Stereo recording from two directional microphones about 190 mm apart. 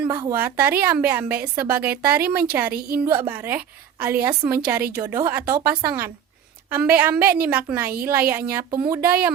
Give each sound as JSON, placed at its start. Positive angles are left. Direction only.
{"t": 0.1, "sound": "a woman's voice", "side_deg": -20}
{"t": 9.0, "sound": "speech", "side_deg": -55}